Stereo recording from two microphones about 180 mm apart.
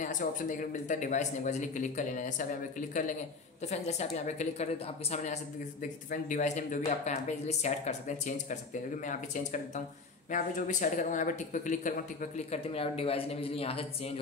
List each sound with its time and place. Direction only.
0.0 s speech: 45° left (ahead or behind)
3.6 s speech: 40° left (ahead or behind)